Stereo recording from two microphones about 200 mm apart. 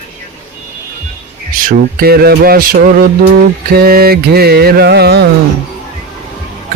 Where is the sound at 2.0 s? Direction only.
50° right (ahead or behind).